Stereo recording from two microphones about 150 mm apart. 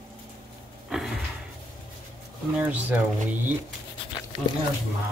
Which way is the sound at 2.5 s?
10° right (ahead or behind).